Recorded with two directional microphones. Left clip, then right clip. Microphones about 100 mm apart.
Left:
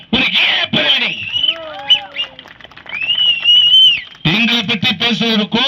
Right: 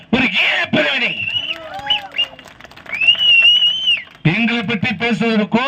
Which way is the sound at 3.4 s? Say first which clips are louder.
Left 5 dB; 30° left (ahead or behind).